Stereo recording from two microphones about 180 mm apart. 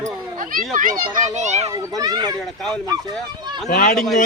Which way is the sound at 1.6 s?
20° right (ahead or behind).